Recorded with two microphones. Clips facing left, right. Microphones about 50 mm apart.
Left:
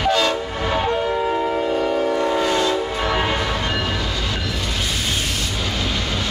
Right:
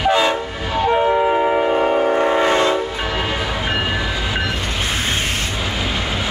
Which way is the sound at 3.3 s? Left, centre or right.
Centre.